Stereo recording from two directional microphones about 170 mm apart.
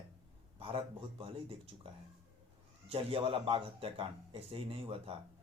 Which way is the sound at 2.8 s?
35° right (ahead or behind).